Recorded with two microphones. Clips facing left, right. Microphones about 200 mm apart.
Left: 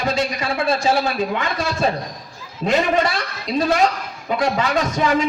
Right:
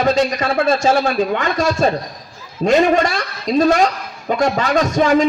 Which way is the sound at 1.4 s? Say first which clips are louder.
Right 5 dB; 45° right (ahead or behind).